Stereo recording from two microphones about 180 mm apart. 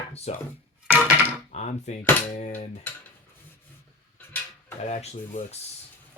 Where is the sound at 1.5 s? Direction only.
40° left (ahead or behind).